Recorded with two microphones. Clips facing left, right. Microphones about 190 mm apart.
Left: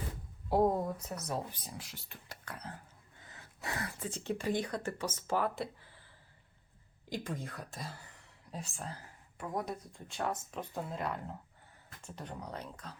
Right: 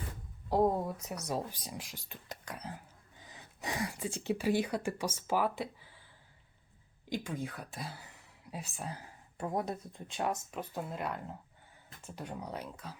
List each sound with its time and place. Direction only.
0.5 s speech: 5° left (ahead or behind)
1.3 s speech: 15° right (ahead or behind)
7.1 s speech: centre (ahead or behind)
9.4 s speech: 25° right (ahead or behind)
10.5 s speech: 5° right (ahead or behind)